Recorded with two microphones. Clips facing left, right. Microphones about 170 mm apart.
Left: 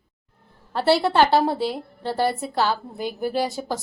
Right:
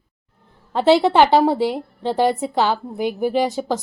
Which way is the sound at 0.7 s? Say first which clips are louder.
Right 5 dB; 20° right (ahead or behind).